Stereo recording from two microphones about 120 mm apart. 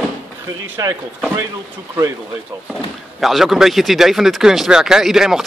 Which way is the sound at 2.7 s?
Centre (ahead or behind).